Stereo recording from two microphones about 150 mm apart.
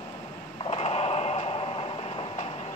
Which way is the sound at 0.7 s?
40° left (ahead or behind).